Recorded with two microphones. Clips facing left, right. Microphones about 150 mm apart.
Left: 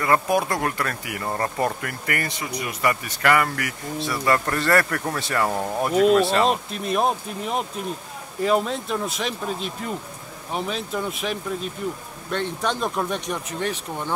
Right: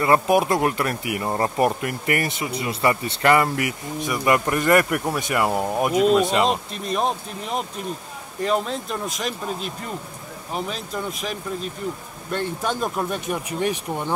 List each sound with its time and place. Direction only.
0.0 s speech: 20° right (ahead or behind)
6.3 s speech: centre (ahead or behind); by 14.1 s 15° right (ahead or behind)